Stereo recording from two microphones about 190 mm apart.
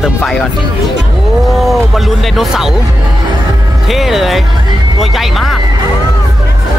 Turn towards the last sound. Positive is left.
turn(degrees=0)  # may be behind; listen again after turning